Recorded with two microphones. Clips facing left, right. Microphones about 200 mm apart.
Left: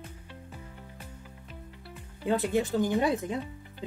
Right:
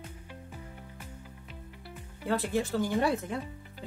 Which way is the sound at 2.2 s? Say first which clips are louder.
Left 3 dB; 20° left (ahead or behind).